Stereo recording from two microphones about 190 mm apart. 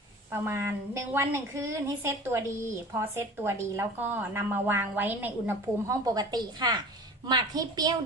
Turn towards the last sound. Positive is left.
turn(degrees=-20)  # may be behind; listen again after turning